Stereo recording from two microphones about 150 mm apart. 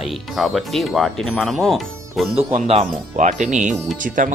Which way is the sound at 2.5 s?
45° right (ahead or behind).